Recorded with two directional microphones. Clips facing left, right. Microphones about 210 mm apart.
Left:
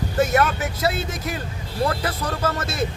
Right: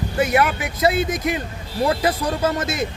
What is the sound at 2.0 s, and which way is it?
Speech, 15° right (ahead or behind).